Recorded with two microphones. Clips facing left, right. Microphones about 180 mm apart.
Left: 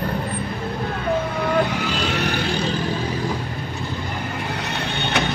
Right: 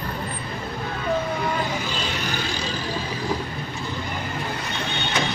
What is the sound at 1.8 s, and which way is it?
Music, 70° left (ahead or behind).